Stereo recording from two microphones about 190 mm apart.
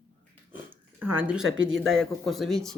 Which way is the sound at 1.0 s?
10° right (ahead or behind).